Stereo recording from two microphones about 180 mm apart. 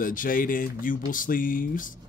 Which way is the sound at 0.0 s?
50° left (ahead or behind).